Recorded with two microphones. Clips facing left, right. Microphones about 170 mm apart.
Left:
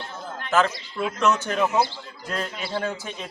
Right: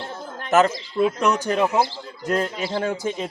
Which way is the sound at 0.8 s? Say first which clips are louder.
Right 5 dB; 25° right (ahead or behind).